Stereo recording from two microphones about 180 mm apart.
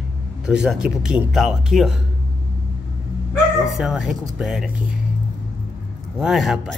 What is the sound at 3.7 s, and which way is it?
Speech, centre (ahead or behind).